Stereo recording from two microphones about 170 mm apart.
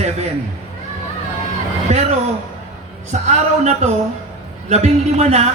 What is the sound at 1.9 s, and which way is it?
A man's voice, 40° right (ahead or behind).